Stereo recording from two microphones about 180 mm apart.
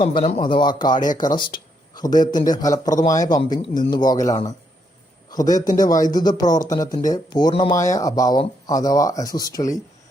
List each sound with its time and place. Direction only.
0.0 s a man's voice: 30° left (ahead or behind)